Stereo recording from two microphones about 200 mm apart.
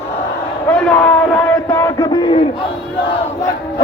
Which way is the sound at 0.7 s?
5° left (ahead or behind).